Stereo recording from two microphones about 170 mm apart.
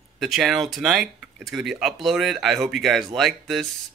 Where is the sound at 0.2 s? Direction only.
Centre (ahead or behind).